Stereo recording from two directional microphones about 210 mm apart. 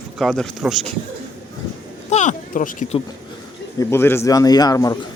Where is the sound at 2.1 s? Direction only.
35° left (ahead or behind).